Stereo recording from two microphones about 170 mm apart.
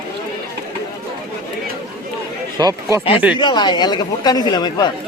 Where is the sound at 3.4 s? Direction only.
25° left (ahead or behind).